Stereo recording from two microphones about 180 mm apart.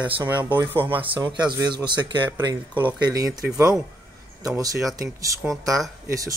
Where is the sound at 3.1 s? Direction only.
20° right (ahead or behind).